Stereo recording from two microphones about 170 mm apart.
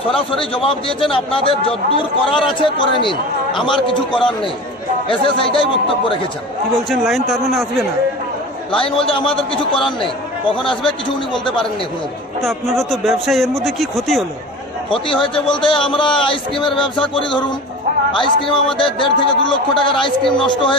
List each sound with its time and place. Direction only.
0.1 s a man's voice: 30° left (ahead or behind)
6.7 s speech: centre (ahead or behind)
8.7 s a man's voice: 30° left (ahead or behind)
12.4 s speech: centre (ahead or behind)
15.2 s a man's voice: 30° left (ahead or behind)